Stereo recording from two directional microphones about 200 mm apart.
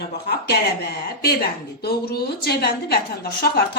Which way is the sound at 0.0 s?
55° left (ahead or behind).